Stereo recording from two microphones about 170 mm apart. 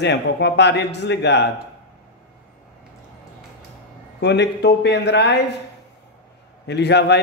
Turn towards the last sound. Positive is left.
turn(degrees=80)